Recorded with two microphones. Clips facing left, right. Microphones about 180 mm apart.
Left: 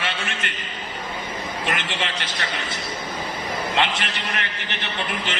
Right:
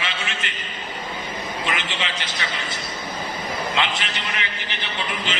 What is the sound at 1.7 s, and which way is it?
Speech, 55° left (ahead or behind).